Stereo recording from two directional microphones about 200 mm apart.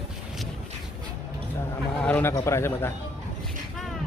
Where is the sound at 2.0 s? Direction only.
10° left (ahead or behind).